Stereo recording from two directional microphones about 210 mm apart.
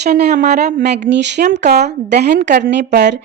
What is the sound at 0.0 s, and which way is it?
A woman's voice, 50° right (ahead or behind).